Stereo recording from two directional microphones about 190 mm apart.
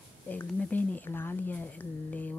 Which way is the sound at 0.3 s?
10° left (ahead or behind).